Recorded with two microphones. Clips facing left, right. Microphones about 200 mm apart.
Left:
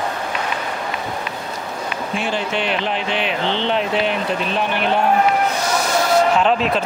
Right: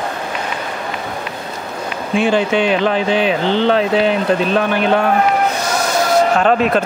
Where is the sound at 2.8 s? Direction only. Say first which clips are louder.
Right 7 dB; 40° right (ahead or behind).